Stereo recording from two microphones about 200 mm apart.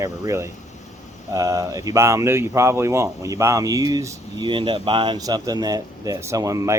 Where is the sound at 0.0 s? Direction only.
15° right (ahead or behind).